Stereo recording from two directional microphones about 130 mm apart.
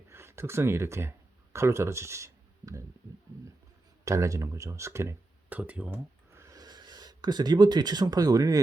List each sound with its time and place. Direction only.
0.1 s speech: 20° right (ahead or behind)
4.0 s speech: 25° right (ahead or behind)
6.4 s speech: 25° right (ahead or behind)